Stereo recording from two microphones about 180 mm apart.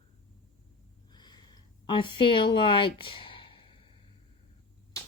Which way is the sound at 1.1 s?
25° left (ahead or behind).